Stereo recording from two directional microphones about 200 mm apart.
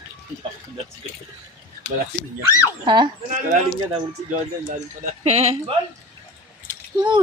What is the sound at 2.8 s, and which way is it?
Speech, 25° right (ahead or behind).